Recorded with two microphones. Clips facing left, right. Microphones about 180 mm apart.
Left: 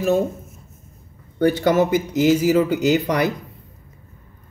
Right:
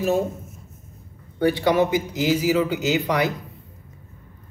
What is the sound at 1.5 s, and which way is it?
Speech, 45° left (ahead or behind).